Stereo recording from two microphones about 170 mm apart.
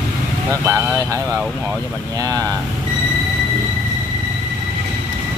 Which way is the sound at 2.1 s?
20° right (ahead or behind).